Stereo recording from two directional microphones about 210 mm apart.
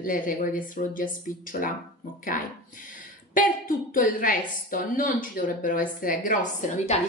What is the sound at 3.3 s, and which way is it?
A woman's voice, 40° left (ahead or behind).